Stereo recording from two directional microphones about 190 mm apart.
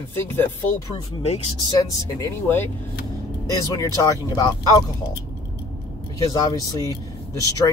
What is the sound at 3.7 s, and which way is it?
Speech, 20° left (ahead or behind).